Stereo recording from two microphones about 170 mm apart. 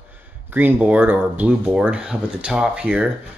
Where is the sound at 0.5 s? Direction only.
10° right (ahead or behind).